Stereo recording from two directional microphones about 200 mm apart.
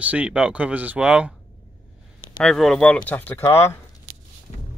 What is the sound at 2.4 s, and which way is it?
Speech, centre (ahead or behind).